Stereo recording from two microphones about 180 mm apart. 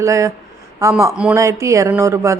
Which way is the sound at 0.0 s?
15° right (ahead or behind).